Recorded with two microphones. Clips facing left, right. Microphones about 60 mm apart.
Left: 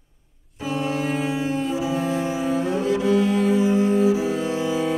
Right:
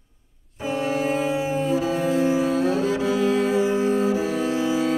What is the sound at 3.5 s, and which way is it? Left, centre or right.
Cello, right.